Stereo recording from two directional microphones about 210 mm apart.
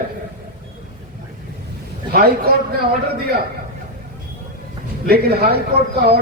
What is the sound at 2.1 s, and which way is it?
Speech, 45° right (ahead or behind).